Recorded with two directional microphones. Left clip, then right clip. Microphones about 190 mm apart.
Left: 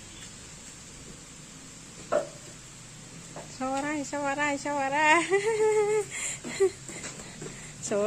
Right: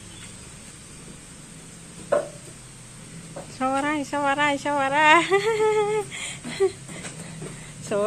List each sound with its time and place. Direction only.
3.5 s a woman's voice: centre (ahead or behind); by 6.7 s 15° left (ahead or behind)
7.9 s a woman's voice: 20° left (ahead or behind)